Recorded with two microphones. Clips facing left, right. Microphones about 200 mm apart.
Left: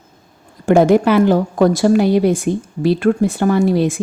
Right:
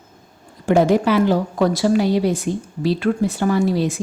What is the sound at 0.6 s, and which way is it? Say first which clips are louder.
A woman's voice: left 4 dB; 50° left (ahead or behind).